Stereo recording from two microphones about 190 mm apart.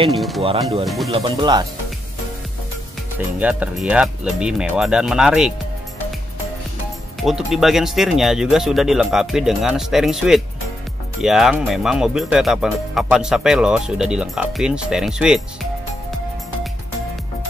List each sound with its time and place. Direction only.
0.1 s speech: centre (ahead or behind)
1.1 s speech: 25° right (ahead or behind)
3.3 s speech: 10° right (ahead or behind)
7.2 s speech: centre (ahead or behind)